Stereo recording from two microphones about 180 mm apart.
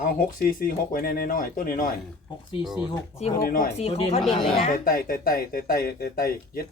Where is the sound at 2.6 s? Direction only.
Centre (ahead or behind).